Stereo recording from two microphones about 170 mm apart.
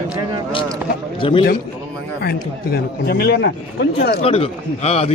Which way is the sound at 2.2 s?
65° left (ahead or behind).